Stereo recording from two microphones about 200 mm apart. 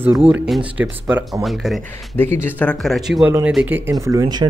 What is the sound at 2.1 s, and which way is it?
Speech, 10° left (ahead or behind).